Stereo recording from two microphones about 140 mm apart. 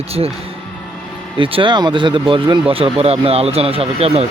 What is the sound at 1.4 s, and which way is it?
Speech, 40° right (ahead or behind).